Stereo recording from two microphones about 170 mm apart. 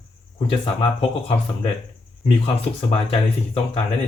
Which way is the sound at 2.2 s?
35° left (ahead or behind).